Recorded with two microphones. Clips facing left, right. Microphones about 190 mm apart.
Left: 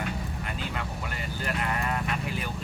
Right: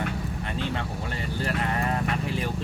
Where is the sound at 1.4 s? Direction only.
35° right (ahead or behind).